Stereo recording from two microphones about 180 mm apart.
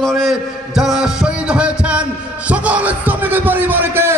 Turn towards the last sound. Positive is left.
turn(degrees=-15)  # may be behind; listen again after turning